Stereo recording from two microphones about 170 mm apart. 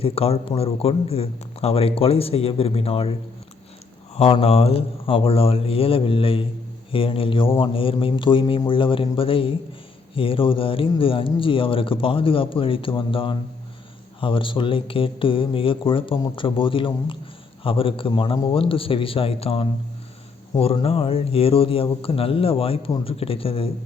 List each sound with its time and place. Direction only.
0.0 s speech: 35° left (ahead or behind)